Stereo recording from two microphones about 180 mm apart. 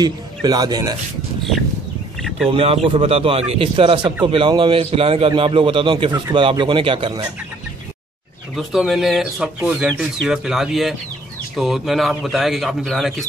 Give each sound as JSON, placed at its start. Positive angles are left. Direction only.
{"t": 0.0, "sound": "a man's voice", "side_deg": -20}
{"t": 2.1, "sound": "a sound", "side_deg": 0}
{"t": 2.5, "sound": "a man's voice", "side_deg": -35}
{"t": 8.5, "sound": "speech", "side_deg": 0}